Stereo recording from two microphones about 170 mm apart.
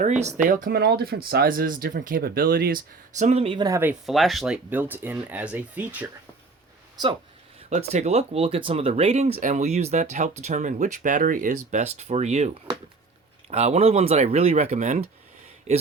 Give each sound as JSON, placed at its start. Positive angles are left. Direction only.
{"t": 0.4, "sound": "speech", "side_deg": -55}
{"t": 3.2, "sound": "speech", "side_deg": -40}
{"t": 3.7, "sound": "speech", "side_deg": -15}
{"t": 4.0, "sound": "speech", "side_deg": 0}
{"t": 6.9, "sound": "speech", "side_deg": -25}
{"t": 7.7, "sound": "speech", "side_deg": -40}
{"t": 13.5, "sound": "speech", "side_deg": -40}